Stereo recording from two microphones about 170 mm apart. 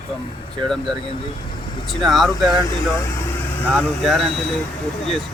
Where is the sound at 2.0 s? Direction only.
Centre (ahead or behind).